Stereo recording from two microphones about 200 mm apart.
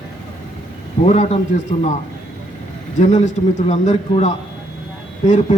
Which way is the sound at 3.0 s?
35° left (ahead or behind).